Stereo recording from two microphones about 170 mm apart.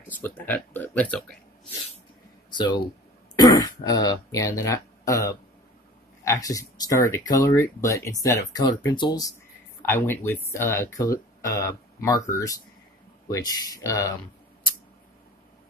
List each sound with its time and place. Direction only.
0.1 s speech: 10° left (ahead or behind)
2.5 s speech: 25° left (ahead or behind)
9.8 s speech: 15° left (ahead or behind)